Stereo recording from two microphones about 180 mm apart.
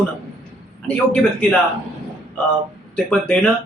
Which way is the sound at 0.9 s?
10° left (ahead or behind).